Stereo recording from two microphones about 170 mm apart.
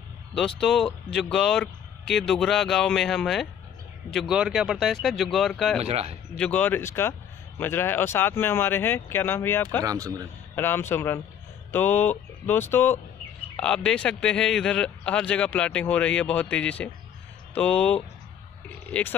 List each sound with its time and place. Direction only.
0.6 s speech: 5° left (ahead or behind)
5.8 s speech: 35° right (ahead or behind)
6.3 s speech: 5° left (ahead or behind)
9.8 s a man's voice: 20° right (ahead or behind)
10.5 s speech: 15° left (ahead or behind)